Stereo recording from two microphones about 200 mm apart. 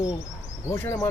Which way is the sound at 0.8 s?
15° left (ahead or behind).